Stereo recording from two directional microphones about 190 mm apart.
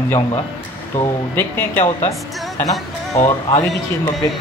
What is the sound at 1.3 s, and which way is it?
Speech, 10° left (ahead or behind).